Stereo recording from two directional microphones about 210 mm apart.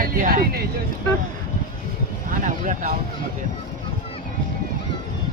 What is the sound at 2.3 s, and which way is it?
Speech, 40° right (ahead or behind).